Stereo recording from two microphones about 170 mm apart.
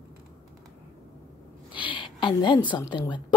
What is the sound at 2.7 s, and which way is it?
Speech, 25° left (ahead or behind).